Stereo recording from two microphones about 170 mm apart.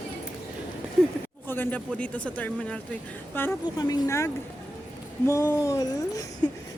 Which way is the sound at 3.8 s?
25° left (ahead or behind).